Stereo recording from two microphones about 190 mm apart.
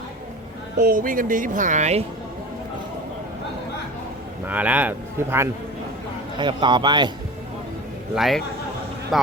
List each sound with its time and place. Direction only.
0.8 s speech: 50° right (ahead or behind)
4.4 s speech: 10° right (ahead or behind)
6.4 s a man's voice: 25° right (ahead or behind)
8.1 s a man's voice: centre (ahead or behind)